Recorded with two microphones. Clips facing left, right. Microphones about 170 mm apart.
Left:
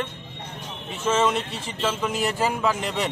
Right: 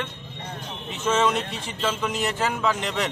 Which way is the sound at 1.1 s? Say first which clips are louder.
Even; 5° left (ahead or behind).